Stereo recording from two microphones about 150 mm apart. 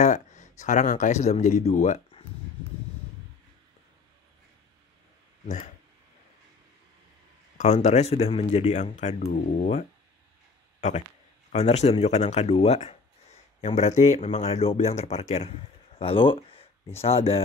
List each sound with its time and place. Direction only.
0.0 s speech: 55° left (ahead or behind)
7.5 s speech: 50° left (ahead or behind)
11.5 s speech: 45° left (ahead or behind)
16.0 s a sound: 35° left (ahead or behind)
17.0 s speech: 40° left (ahead or behind)